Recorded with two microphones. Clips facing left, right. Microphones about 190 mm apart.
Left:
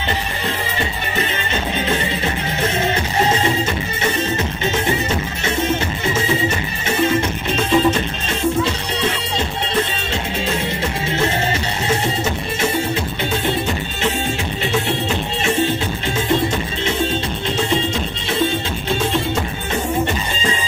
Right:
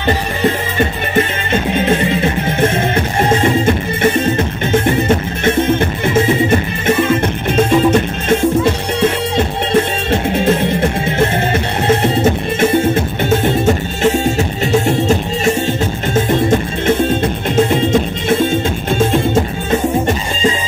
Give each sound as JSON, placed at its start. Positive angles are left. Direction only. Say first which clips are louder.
{"t": 0.4, "sound": "music", "louder": "right 8 dB", "side_deg": -50}
{"t": 2.6, "sound": "music", "louder": "right 5 dB", "side_deg": -55}
{"t": 10.1, "sound": "music", "louder": "right 9 dB", "side_deg": -55}